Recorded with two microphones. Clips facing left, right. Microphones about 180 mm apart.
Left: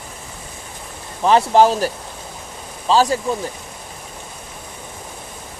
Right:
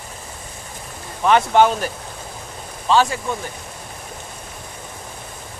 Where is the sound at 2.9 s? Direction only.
35° left (ahead or behind).